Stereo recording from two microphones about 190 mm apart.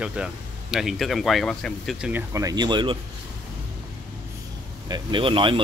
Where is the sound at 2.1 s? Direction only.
15° right (ahead or behind).